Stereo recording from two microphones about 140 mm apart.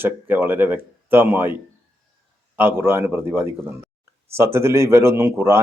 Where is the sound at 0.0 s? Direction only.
15° right (ahead or behind).